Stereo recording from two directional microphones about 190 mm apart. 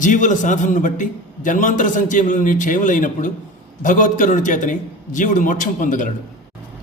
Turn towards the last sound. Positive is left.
turn(degrees=45)  # may be behind; listen again after turning